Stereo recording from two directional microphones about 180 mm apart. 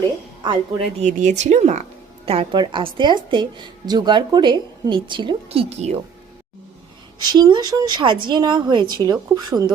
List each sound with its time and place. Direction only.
0.4 s a woman's voice: 25° right (ahead or behind)
1.0 s a woman's voice: 40° right (ahead or behind)
7.2 s a woman's voice: 25° right (ahead or behind)